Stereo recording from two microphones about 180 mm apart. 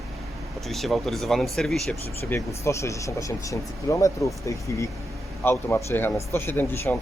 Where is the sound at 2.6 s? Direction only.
15° left (ahead or behind).